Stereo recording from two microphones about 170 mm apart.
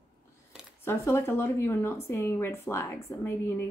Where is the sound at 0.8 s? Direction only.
15° left (ahead or behind).